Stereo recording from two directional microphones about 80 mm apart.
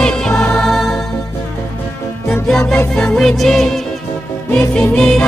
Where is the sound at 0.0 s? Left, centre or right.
Centre.